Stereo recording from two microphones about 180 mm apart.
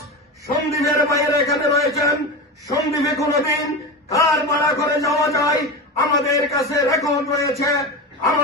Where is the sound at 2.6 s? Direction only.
20° left (ahead or behind).